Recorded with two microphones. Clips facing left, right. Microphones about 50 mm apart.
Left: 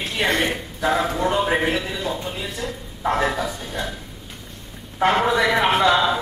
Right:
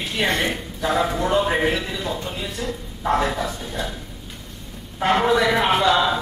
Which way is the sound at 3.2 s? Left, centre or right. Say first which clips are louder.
Left 3 dB; left.